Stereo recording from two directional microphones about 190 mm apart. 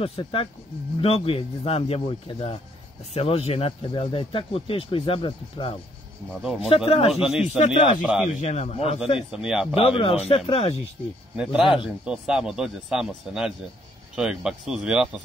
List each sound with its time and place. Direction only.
0.0 s speech: 30° left (ahead or behind)
7.2 s speech: 5° right (ahead or behind)
7.5 s speech: 30° left (ahead or behind)
8.0 s speech: centre (ahead or behind)
8.4 s a man's voice: 35° left (ahead or behind)
9.3 s speech: 5° right (ahead or behind)
9.8 s speech: 30° left (ahead or behind)
11.7 s speech: 5° right (ahead or behind)